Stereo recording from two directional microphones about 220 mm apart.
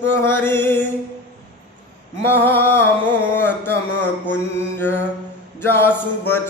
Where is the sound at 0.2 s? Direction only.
10° left (ahead or behind).